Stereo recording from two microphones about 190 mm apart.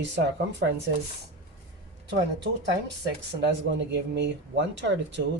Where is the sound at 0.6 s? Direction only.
65° right (ahead or behind).